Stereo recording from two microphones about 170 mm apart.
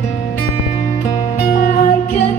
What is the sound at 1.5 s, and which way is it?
Music, 55° left (ahead or behind).